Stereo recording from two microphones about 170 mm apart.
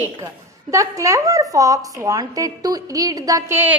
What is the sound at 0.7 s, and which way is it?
A woman's voice, 20° right (ahead or behind).